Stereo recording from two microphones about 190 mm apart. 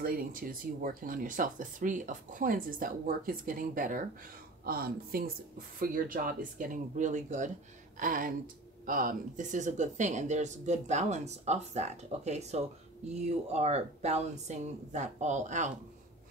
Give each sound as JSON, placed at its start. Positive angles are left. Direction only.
{"t": 0.0, "sound": "speech", "side_deg": -50}